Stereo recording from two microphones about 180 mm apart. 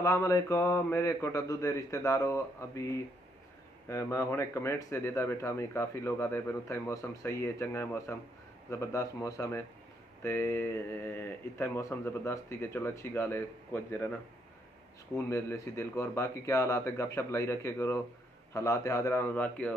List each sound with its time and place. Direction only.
0.0 s speech: 15° left (ahead or behind)
15.1 s speech: 15° left (ahead or behind)